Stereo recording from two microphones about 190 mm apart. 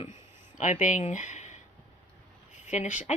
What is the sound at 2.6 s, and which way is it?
Speech, 40° left (ahead or behind).